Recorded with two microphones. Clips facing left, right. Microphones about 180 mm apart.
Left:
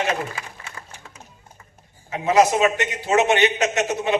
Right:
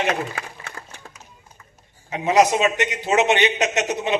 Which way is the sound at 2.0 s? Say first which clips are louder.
Even; 20° right (ahead or behind).